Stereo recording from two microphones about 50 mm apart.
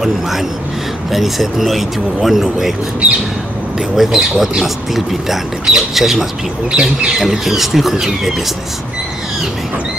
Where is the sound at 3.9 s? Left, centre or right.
Centre.